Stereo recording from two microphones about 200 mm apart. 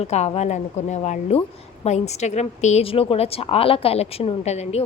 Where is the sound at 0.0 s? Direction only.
30° left (ahead or behind).